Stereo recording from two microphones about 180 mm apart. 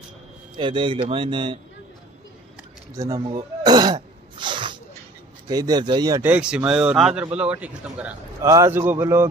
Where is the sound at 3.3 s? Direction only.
25° right (ahead or behind).